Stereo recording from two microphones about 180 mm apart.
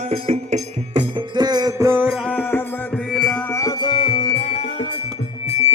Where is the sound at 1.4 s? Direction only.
20° right (ahead or behind).